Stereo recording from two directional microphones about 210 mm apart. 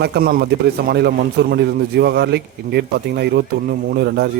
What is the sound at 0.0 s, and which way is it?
A man's voice, 50° right (ahead or behind).